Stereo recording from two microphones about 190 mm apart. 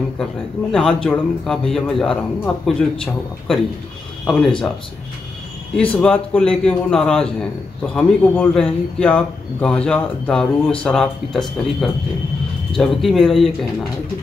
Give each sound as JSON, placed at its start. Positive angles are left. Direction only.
{"t": 0.2, "sound": "speech", "side_deg": 5}
{"t": 5.8, "sound": "speech", "side_deg": 5}